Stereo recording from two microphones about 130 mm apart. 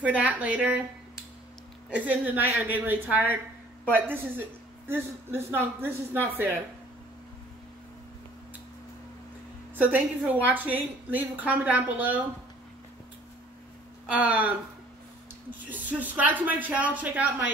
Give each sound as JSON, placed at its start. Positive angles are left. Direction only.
{"t": 0.0, "sound": "a woman's voice", "side_deg": -10}
{"t": 9.8, "sound": "a woman's voice", "side_deg": -10}
{"t": 14.1, "sound": "a woman's voice", "side_deg": -10}
{"t": 15.7, "sound": "a woman's voice", "side_deg": -10}